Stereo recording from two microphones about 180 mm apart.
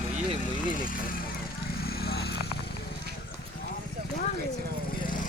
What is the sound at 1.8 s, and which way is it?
Vehicle, 60° left (ahead or behind).